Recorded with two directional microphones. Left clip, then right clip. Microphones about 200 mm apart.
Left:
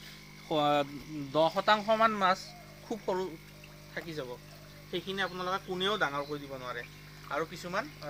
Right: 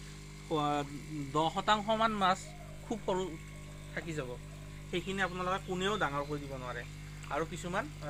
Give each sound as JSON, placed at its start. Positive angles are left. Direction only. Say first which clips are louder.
{"t": 0.4, "sound": "speech", "louder": "left 5 dB", "side_deg": 55}
{"t": 1.7, "sound": "speech", "louder": "left 2 dB", "side_deg": 30}
{"t": 2.9, "sound": "speech", "louder": "left 1 dB", "side_deg": 15}
{"t": 3.9, "sound": "speech", "louder": "left 1 dB", "side_deg": 0}
{"t": 5.7, "sound": "speech", "louder": "left 4 dB", "side_deg": 15}